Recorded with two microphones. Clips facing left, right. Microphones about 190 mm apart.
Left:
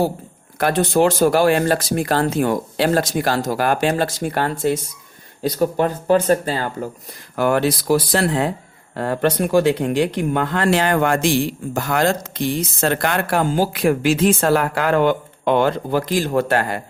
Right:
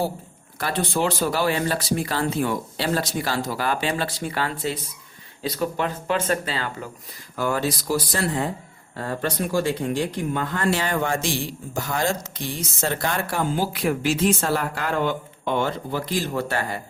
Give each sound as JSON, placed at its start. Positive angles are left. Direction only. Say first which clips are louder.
{"t": 0.6, "sound": "speech", "louder": "left 8 dB", "side_deg": 45}
{"t": 7.1, "sound": "speech", "louder": "left 7 dB", "side_deg": 65}
{"t": 13.7, "sound": "speech", "louder": "left 6 dB", "side_deg": 90}
{"t": 16.2, "sound": "speech", "louder": "left 7 dB", "side_deg": 55}
{"t": 16.5, "sound": "speech", "louder": "left 7 dB", "side_deg": 85}